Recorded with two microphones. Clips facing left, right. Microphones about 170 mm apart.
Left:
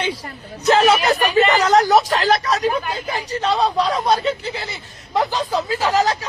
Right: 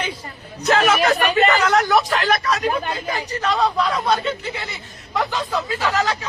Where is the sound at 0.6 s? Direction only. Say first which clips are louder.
Left 2 dB; 35° left (ahead or behind).